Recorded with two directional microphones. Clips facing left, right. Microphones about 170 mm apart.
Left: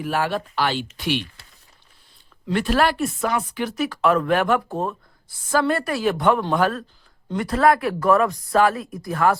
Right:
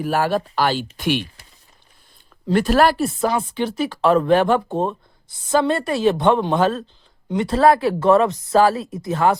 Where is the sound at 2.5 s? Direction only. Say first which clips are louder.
Right 4 dB; 40° right (ahead or behind).